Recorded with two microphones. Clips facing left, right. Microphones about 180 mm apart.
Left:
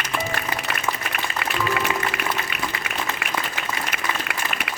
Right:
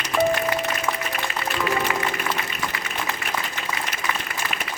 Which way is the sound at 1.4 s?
70° left (ahead or behind).